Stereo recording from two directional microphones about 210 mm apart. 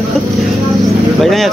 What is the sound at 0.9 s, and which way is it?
Speech, centre (ahead or behind).